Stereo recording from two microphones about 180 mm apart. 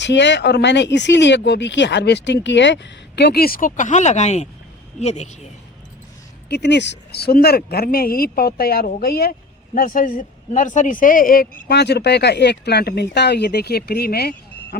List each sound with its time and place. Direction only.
0.0 s speech: 75° left (ahead or behind); by 5.5 s 40° left (ahead or behind)
6.5 s speech: 75° left (ahead or behind)